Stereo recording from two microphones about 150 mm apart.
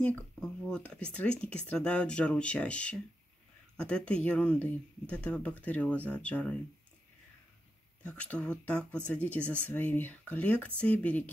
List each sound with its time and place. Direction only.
0.0 s speech: 5° left (ahead or behind)
8.0 s speech: 10° left (ahead or behind)